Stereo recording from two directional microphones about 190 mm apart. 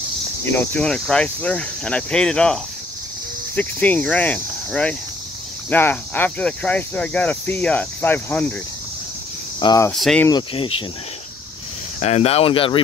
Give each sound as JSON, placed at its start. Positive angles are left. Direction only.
{"t": 0.5, "sound": "speech", "side_deg": 10}
{"t": 9.6, "sound": "speech", "side_deg": 20}
{"t": 9.9, "sound": "speech", "side_deg": 0}
{"t": 12.0, "sound": "speech", "side_deg": 35}